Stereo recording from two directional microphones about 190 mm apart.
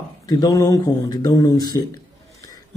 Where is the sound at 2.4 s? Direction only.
20° left (ahead or behind).